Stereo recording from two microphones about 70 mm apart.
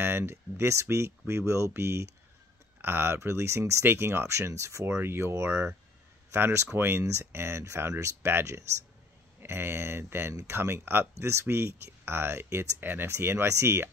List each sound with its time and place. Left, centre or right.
0.0 s speech: right
8.3 s speech: right